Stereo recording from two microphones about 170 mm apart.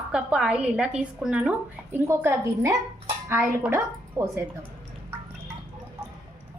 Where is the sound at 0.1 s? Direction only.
5° right (ahead or behind).